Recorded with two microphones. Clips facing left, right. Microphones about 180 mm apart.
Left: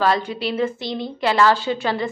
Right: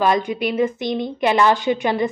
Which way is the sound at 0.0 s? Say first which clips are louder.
Right 2 dB; 15° right (ahead or behind).